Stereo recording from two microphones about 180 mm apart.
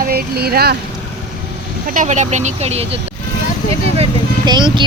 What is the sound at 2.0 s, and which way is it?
Speech, 40° right (ahead or behind).